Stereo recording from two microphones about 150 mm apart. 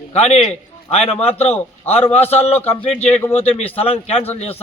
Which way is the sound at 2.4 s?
40° left (ahead or behind).